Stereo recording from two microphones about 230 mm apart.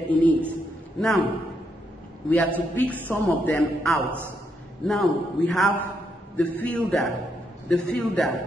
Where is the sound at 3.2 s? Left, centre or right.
Centre.